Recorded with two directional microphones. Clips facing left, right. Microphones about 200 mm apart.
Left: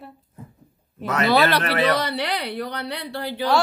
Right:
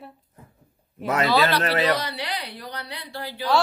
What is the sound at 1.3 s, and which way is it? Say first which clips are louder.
Speech: left 4 dB; 60° left (ahead or behind).